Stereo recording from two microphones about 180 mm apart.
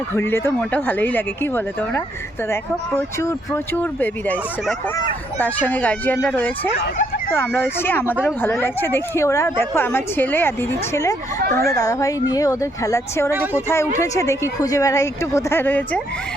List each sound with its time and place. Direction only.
0.2 s a woman's voice: 15° left (ahead or behind)
5.4 s a woman's voice: 10° left (ahead or behind)
13.3 s speech: 10° right (ahead or behind)
13.9 s a woman's voice: 15° left (ahead or behind)